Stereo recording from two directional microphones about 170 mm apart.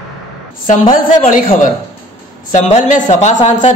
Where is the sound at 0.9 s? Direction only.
50° left (ahead or behind).